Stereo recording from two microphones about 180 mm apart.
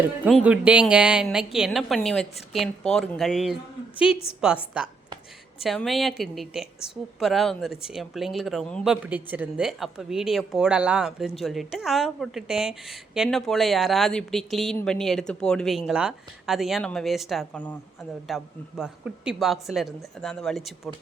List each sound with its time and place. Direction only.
0.3 s speech: 5° right (ahead or behind)
4.1 s a woman's voice: 35° left (ahead or behind)
4.4 s speech: 5° right (ahead or behind)